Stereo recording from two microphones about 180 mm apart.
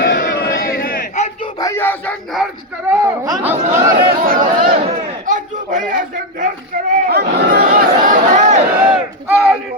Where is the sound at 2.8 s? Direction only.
15° right (ahead or behind).